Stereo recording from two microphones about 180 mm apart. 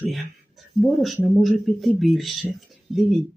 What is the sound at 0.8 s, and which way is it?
Speech, centre (ahead or behind).